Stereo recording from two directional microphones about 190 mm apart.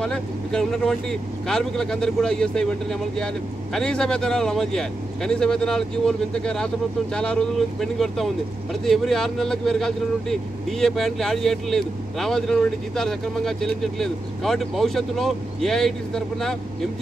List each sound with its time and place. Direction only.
0.0 s speech: 5° left (ahead or behind)